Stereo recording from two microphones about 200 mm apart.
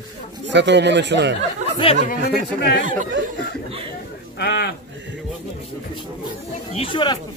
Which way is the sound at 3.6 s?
25° right (ahead or behind).